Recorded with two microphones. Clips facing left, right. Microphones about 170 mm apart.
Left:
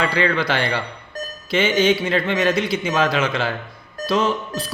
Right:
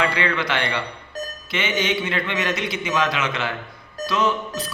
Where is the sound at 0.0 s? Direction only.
35° left (ahead or behind).